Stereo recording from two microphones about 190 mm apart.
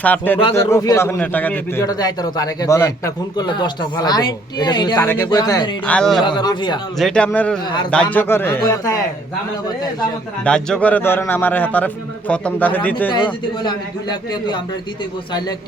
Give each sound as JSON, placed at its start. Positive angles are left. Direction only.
{"t": 0.0, "sound": "a man's voice", "side_deg": 10}
{"t": 5.8, "sound": "speech", "side_deg": 5}
{"t": 6.2, "sound": "a man's voice", "side_deg": 25}
{"t": 7.0, "sound": "a man's voice", "side_deg": 5}
{"t": 10.4, "sound": "a man's voice", "side_deg": 5}
{"t": 13.1, "sound": "a man's voice", "side_deg": 25}